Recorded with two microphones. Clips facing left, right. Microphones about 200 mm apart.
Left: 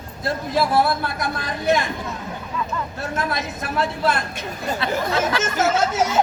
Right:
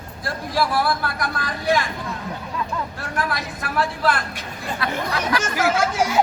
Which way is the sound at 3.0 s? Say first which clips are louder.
Left 3 dB; 25° left (ahead or behind).